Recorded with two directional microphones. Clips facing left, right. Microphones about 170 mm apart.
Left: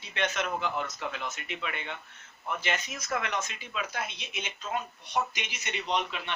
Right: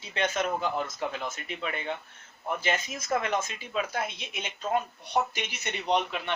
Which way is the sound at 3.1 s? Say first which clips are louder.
Right 4 dB; 35° right (ahead or behind).